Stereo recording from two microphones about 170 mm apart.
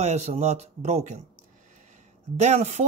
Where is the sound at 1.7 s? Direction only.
45° right (ahead or behind).